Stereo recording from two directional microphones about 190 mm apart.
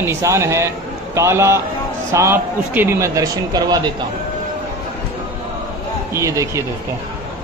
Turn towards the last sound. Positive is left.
turn(degrees=-15)  # may be behind; listen again after turning